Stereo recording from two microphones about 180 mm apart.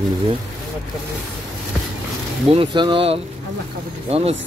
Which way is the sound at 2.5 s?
30° right (ahead or behind).